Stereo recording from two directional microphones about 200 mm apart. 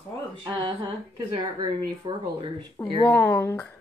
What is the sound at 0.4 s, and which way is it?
A woman's voice, 20° right (ahead or behind).